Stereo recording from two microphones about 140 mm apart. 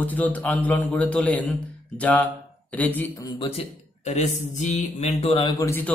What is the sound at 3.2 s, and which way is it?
Speech, 30° left (ahead or behind).